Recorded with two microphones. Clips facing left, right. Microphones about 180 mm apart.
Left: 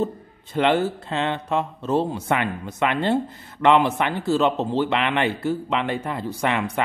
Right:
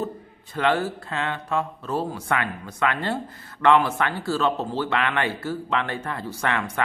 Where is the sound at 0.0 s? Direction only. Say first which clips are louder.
Left 4 dB; 25° left (ahead or behind).